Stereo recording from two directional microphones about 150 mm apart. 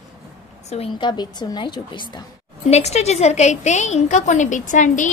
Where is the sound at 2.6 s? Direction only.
45° left (ahead or behind).